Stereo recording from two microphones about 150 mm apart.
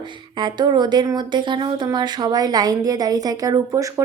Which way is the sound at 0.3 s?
30° right (ahead or behind).